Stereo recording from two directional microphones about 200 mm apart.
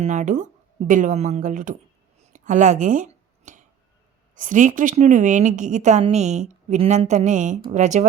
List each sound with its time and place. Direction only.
0.0 s a woman's voice: 35° right (ahead or behind)
3.5 s a sound: 40° right (ahead or behind)
4.4 s a woman's voice: 40° right (ahead or behind)